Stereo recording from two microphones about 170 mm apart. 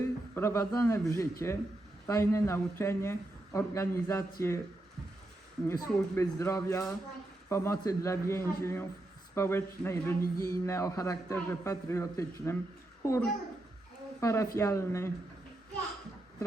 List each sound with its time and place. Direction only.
0.3 s a man's voice: 15° left (ahead or behind)
5.6 s a man's voice: 15° left (ahead or behind)